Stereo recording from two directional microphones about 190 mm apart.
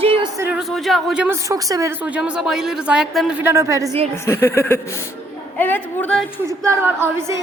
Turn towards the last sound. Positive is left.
turn(degrees=-15)  # may be behind; listen again after turning